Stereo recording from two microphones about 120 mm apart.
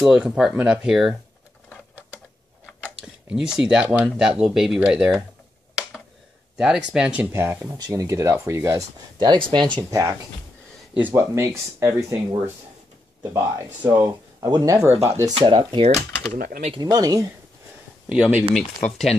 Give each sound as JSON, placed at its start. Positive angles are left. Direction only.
{"t": 0.0, "sound": "speech", "side_deg": -5}
{"t": 3.0, "sound": "speech", "side_deg": -5}
{"t": 6.5, "sound": "speech", "side_deg": -5}
{"t": 7.3, "sound": "speech", "side_deg": -20}
{"t": 14.4, "sound": "speech", "side_deg": -30}
{"t": 15.4, "sound": "speech", "side_deg": -40}
{"t": 16.8, "sound": "speech", "side_deg": -30}
{"t": 18.0, "sound": "speech", "side_deg": -10}